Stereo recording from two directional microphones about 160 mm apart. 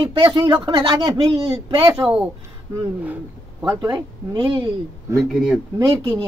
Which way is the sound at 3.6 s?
20° right (ahead or behind).